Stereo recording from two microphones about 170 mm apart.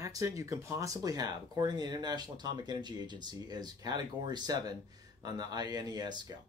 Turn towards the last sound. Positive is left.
turn(degrees=-25)  # may be behind; listen again after turning